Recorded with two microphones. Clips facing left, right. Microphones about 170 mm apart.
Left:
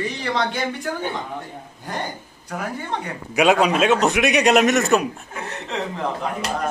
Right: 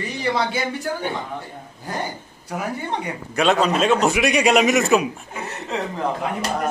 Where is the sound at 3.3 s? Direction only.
10° left (ahead or behind).